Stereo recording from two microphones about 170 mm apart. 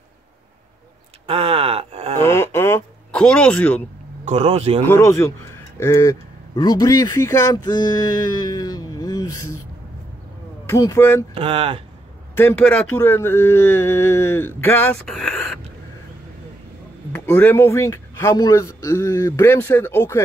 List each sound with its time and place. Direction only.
1.2 s groan: 35° right (ahead or behind)
2.1 s a sound: 15° left (ahead or behind)
4.2 s speech: 40° right (ahead or behind)
4.8 s speech: 15° left (ahead or behind)
10.7 s speech: 15° left (ahead or behind)
11.3 s speech: 35° right (ahead or behind)
12.4 s speech: 10° left (ahead or behind)
17.1 s speech: 10° left (ahead or behind)